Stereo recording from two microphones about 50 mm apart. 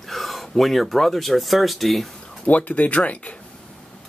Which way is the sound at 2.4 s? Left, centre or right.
Left.